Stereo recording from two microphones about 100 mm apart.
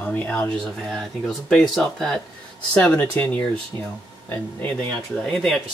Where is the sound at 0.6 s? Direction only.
5° left (ahead or behind).